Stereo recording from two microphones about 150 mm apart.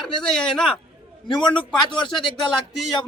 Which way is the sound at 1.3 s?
30° left (ahead or behind).